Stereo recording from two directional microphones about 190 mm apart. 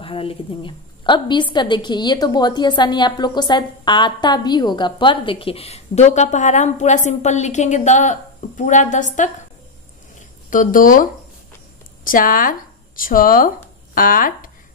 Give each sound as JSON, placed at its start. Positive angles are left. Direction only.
{"t": 0.0, "sound": "a woman's voice", "side_deg": 30}
{"t": 10.5, "sound": "speech", "side_deg": 45}